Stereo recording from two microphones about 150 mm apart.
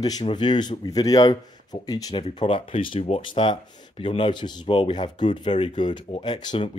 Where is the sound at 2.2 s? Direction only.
35° left (ahead or behind).